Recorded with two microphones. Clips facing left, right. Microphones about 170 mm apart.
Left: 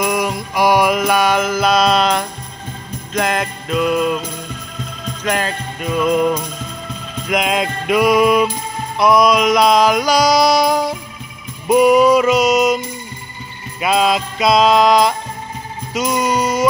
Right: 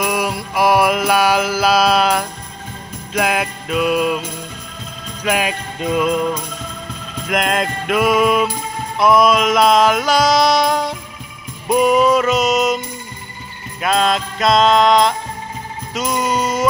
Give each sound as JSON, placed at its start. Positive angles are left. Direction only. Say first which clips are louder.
{"t": 0.0, "sound": "music", "louder": "left 1 dB", "side_deg": -5}
{"t": 5.2, "sound": "music", "louder": "right 1 dB", "side_deg": -10}
{"t": 5.8, "sound": "music", "louder": "right 1 dB", "side_deg": -20}
{"t": 7.2, "sound": "music", "louder": "left 1 dB", "side_deg": 0}